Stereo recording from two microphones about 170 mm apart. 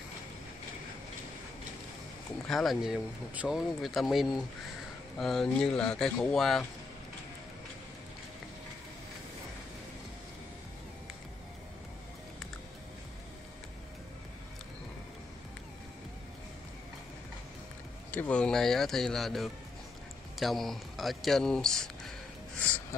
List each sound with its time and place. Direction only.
2.4 s speech: centre (ahead or behind)
18.1 s speech: 5° left (ahead or behind)